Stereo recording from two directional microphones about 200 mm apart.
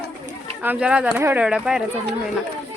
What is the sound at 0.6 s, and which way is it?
Speech, 5° right (ahead or behind).